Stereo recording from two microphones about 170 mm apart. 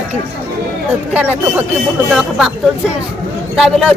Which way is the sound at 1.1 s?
10° right (ahead or behind).